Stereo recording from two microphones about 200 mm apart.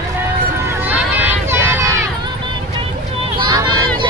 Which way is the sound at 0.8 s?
10° right (ahead or behind).